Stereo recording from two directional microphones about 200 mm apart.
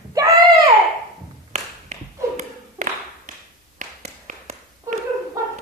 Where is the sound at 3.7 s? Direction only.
40° right (ahead or behind).